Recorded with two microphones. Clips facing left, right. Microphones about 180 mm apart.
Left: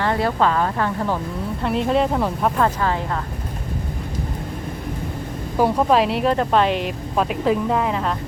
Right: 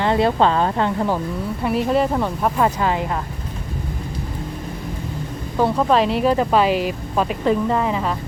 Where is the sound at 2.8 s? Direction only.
15° right (ahead or behind).